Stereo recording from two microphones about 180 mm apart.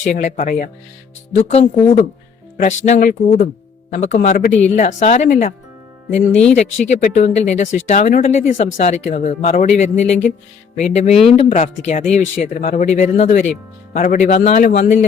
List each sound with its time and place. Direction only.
0.0 s a man's voice: 45° left (ahead or behind)